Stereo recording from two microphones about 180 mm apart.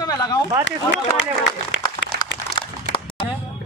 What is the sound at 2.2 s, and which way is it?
Crumpling, 30° left (ahead or behind).